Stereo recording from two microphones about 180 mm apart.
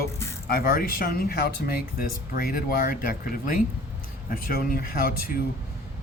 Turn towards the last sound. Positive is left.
turn(degrees=55)  # may be behind; listen again after turning